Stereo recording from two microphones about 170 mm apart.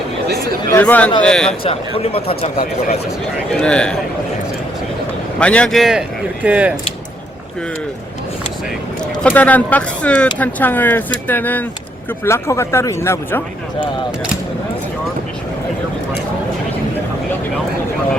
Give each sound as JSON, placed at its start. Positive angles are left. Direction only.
{"t": 0.7, "sound": "a man's voice", "side_deg": 10}
{"t": 1.6, "sound": "speech", "side_deg": 35}
{"t": 3.5, "sound": "speech", "side_deg": 5}
{"t": 5.4, "sound": "speech", "side_deg": 5}
{"t": 9.2, "sound": "speech", "side_deg": 10}